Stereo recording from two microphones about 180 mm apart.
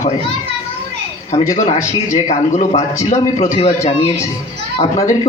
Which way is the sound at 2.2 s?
40° left (ahead or behind).